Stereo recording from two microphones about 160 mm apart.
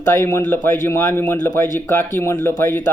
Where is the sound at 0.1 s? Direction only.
15° left (ahead or behind).